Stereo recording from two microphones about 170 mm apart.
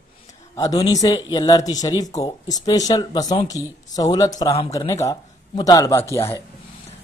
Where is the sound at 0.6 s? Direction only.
20° left (ahead or behind).